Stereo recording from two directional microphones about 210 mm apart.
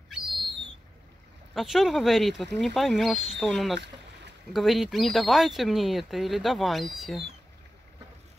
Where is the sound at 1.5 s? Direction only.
Centre (ahead or behind).